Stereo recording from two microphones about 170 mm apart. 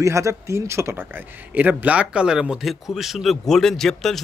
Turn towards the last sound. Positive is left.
turn(degrees=0)  # may be behind; listen again after turning